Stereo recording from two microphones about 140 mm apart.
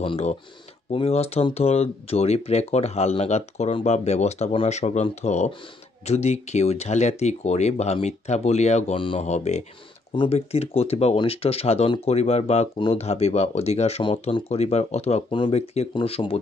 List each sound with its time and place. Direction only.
0.0 s speech: 40° left (ahead or behind)
9.2 s speech: 55° left (ahead or behind)
10.1 s speech: 40° left (ahead or behind)